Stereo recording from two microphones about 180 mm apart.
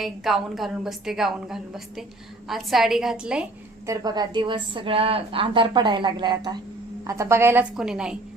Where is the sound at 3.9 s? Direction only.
20° right (ahead or behind); by 8.1 s 5° right (ahead or behind).